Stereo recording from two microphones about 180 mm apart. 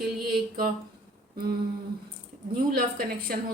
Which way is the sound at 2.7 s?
55° right (ahead or behind).